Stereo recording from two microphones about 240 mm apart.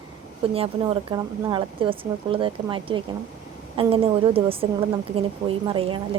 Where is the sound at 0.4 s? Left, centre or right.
Right.